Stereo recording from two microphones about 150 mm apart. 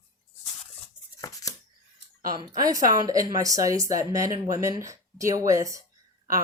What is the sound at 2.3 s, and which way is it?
Speech, 25° right (ahead or behind).